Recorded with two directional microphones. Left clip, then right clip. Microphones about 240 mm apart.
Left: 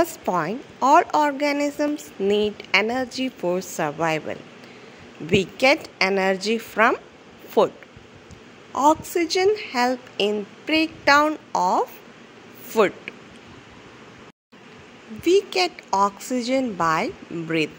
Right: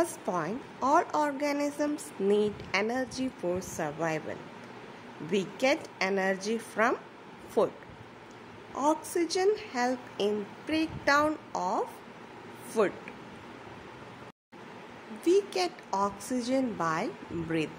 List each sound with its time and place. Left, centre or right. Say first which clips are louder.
0.0 s a woman's voice: left 8 dB; centre
8.7 s a woman's voice: left 10 dB; centre
15.2 s a woman's voice: left 7 dB; centre